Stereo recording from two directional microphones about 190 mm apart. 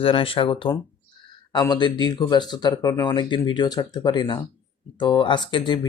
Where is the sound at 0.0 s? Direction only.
30° left (ahead or behind).